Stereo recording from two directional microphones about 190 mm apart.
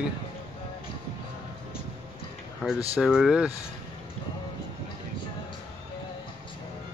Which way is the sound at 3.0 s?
5° right (ahead or behind).